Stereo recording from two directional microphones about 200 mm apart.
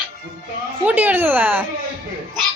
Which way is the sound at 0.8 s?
10° right (ahead or behind).